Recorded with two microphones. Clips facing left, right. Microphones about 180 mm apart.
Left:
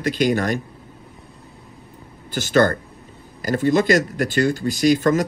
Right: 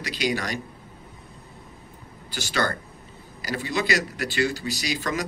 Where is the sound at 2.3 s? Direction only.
50° left (ahead or behind).